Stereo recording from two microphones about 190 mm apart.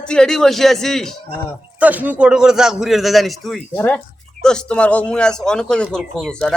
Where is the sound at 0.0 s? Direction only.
5° left (ahead or behind).